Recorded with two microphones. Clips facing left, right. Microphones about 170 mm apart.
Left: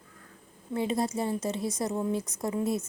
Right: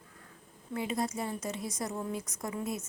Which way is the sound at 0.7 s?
30° left (ahead or behind).